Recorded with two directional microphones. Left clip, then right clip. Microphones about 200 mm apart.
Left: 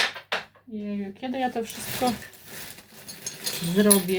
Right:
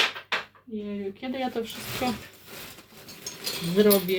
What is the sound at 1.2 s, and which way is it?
Speech, 10° left (ahead or behind).